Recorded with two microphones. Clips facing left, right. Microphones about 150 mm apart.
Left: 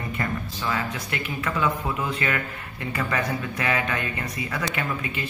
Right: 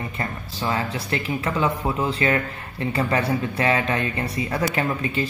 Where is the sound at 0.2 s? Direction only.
35° right (ahead or behind).